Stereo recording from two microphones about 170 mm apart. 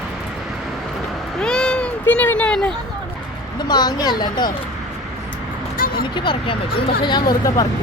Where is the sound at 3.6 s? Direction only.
25° left (ahead or behind).